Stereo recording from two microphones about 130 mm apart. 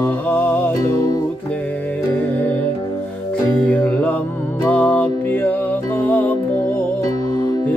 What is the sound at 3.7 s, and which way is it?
Music, 10° left (ahead or behind).